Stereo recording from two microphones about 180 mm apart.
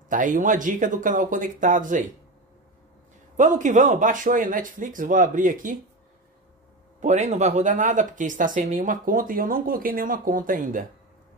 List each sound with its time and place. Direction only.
0.1 s speech: 45° right (ahead or behind)
3.3 s speech: 45° right (ahead or behind)
7.0 s speech: 40° right (ahead or behind)